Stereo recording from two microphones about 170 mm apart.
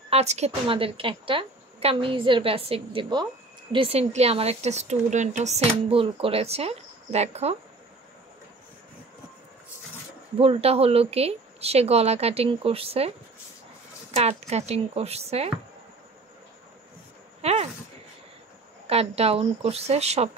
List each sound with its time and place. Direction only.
0.1 s speech: 40° right (ahead or behind)
10.4 s speech: 35° right (ahead or behind)
14.5 s speech: 40° right (ahead or behind)
17.4 s a sound: 40° right (ahead or behind)
18.9 s speech: 35° right (ahead or behind)